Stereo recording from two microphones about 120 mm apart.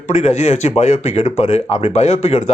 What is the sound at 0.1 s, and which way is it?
Speech, 60° left (ahead or behind).